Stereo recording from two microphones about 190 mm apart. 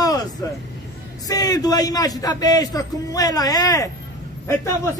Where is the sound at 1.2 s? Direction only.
20° left (ahead or behind).